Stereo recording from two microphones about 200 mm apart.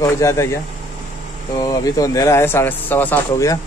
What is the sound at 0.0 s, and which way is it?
Speech, 15° left (ahead or behind).